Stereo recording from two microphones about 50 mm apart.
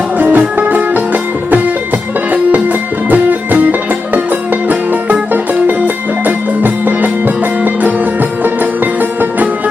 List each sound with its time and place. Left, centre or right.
0.2 s music: right
3.1 s music: right